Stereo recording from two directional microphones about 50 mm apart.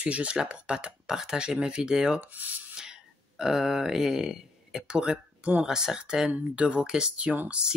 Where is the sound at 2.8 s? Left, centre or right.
Centre.